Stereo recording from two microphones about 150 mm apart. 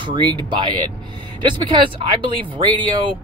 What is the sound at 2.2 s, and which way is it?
Speech, 35° right (ahead or behind).